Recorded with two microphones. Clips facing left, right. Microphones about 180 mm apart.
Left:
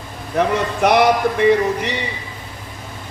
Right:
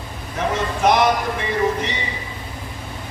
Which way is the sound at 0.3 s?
60° left (ahead or behind).